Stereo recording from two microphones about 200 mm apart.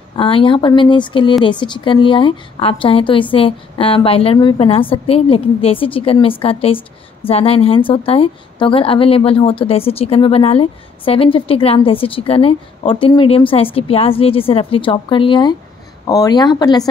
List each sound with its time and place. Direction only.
0.2 s a woman's voice: 25° left (ahead or behind)